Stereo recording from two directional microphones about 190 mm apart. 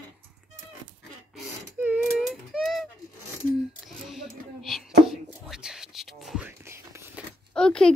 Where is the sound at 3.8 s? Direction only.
Centre (ahead or behind).